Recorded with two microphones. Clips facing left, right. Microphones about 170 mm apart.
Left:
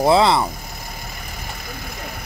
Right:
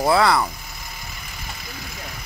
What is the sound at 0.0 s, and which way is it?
Speech, 25° left (ahead or behind).